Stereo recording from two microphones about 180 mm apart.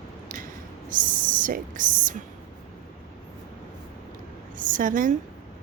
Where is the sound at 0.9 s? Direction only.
50° right (ahead or behind).